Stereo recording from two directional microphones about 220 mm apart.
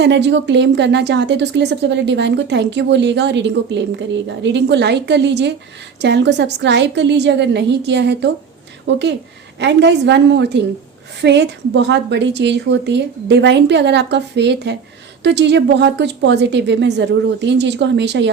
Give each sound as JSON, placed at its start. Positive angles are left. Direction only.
{"t": 0.0, "sound": "speech", "side_deg": -50}